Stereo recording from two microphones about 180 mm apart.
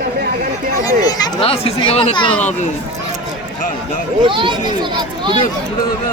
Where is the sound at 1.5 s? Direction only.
35° left (ahead or behind).